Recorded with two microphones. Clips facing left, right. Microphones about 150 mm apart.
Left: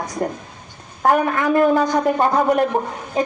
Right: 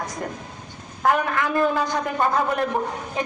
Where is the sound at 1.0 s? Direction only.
40° left (ahead or behind).